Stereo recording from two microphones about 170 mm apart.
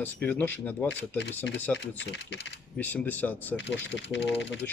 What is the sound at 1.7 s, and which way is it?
Speech, 90° left.